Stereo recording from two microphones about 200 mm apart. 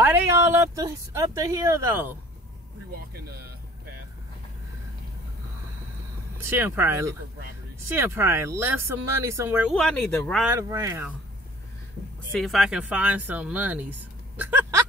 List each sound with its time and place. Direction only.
0.0 s speech: 10° right (ahead or behind)
6.4 s speech: 10° right (ahead or behind)
9.8 s speech: 5° left (ahead or behind)
10.4 s speech: 15° right (ahead or behind)
12.4 s speech: centre (ahead or behind)